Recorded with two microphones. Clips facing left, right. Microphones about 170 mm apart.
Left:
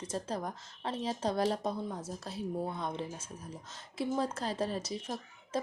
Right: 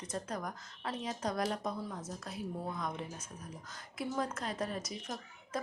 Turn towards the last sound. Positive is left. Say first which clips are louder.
# left 3 dB
turn(degrees=30)  # may be behind; listen again after turning